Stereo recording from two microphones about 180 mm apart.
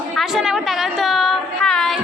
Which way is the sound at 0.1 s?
Centre (ahead or behind).